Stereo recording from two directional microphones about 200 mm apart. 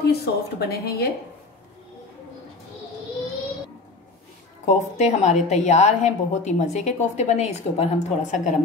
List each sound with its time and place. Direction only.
0.0 s a woman's voice: 55° left (ahead or behind)
4.6 s a woman's voice: 35° left (ahead or behind)